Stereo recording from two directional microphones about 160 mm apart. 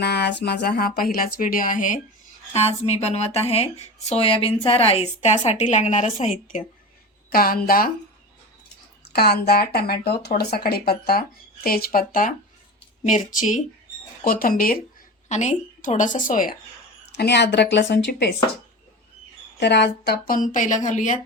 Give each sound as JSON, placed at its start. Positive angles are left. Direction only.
{"t": 0.0, "sound": "a woman's voice", "side_deg": 90}
{"t": 1.1, "sound": "speech", "side_deg": 60}
{"t": 2.5, "sound": "speech", "side_deg": 40}
{"t": 7.3, "sound": "speech", "side_deg": 65}
{"t": 9.1, "sound": "a woman's voice", "side_deg": 85}
{"t": 14.3, "sound": "speech", "side_deg": 65}
{"t": 15.3, "sound": "a woman's voice", "side_deg": 50}
{"t": 17.1, "sound": "a woman's voice", "side_deg": 90}
{"t": 19.5, "sound": "speech", "side_deg": 90}